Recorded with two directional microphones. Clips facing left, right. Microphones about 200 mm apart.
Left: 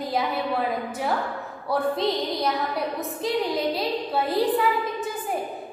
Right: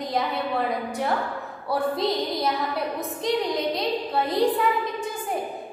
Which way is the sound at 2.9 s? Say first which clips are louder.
Even; 5° left (ahead or behind).